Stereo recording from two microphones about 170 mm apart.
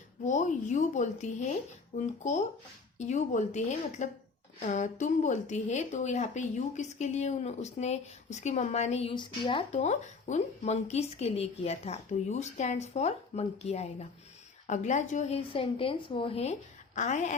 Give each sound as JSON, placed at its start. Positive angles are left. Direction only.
{"t": 0.3, "sound": "a woman's voice", "side_deg": 45}
{"t": 9.7, "sound": "a woman's voice", "side_deg": 45}